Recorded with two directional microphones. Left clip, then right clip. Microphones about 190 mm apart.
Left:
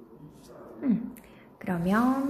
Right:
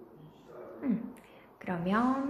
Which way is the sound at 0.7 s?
15° left (ahead or behind).